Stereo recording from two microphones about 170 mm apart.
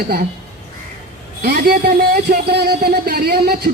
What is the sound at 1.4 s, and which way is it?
Speech, 65° right (ahead or behind).